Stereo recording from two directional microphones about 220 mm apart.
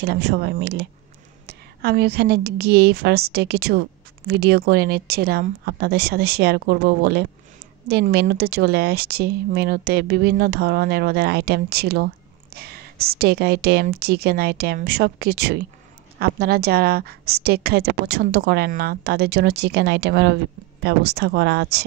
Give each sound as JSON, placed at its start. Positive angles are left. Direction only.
{"t": 0.0, "sound": "a woman's voice", "side_deg": -50}